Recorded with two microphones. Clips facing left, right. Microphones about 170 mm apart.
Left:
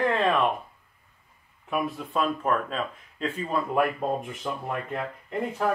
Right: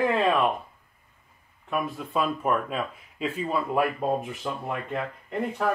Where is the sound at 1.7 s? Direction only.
Centre (ahead or behind).